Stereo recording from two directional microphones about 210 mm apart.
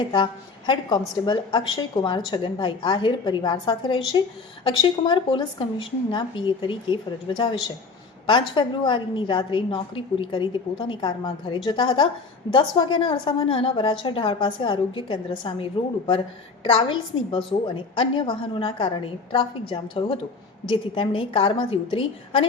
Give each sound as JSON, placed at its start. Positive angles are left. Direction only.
{"t": 0.0, "sound": "a woman's voice", "side_deg": 20}
{"t": 16.7, "sound": "a woman's voice", "side_deg": 25}